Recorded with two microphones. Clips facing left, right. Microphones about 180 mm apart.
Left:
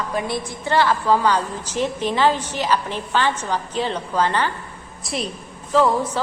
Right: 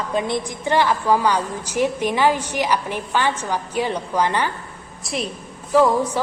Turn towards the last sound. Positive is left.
turn(degrees=-10)  # may be behind; listen again after turning